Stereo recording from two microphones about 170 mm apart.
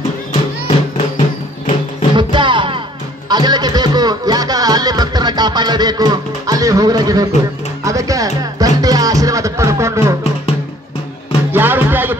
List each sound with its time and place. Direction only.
0.7 s music: 40° left (ahead or behind)
2.1 s music: 30° right (ahead or behind)
11.5 s music: 10° right (ahead or behind)